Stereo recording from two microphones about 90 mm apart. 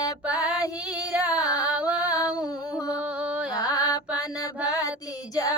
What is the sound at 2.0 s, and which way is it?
Music, 45° left (ahead or behind).